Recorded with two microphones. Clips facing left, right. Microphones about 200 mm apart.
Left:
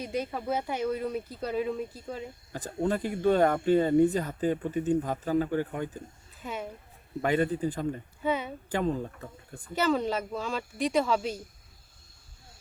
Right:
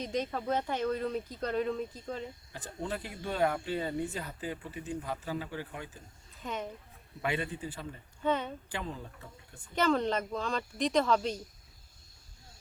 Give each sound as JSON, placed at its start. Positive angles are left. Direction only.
{"t": 0.0, "sound": "speech", "side_deg": 10}
{"t": 2.5, "sound": "speech", "side_deg": 45}
{"t": 6.4, "sound": "speech", "side_deg": 10}
{"t": 7.2, "sound": "speech", "side_deg": 45}
{"t": 8.2, "sound": "speech", "side_deg": 10}
{"t": 8.7, "sound": "speech", "side_deg": 45}
{"t": 9.7, "sound": "speech", "side_deg": 5}